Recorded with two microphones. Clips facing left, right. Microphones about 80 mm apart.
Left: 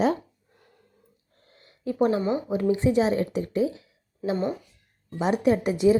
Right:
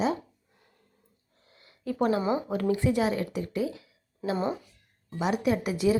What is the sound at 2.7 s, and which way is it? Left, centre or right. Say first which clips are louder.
Speech: left 4 dB; left.